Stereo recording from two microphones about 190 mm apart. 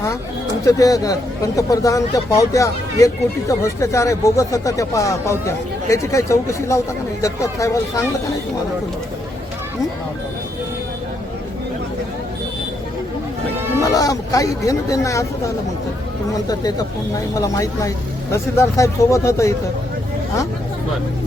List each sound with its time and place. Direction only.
0.6 s speech: 20° left (ahead or behind)
13.8 s speech: 20° left (ahead or behind)
16.3 s speech: 20° left (ahead or behind)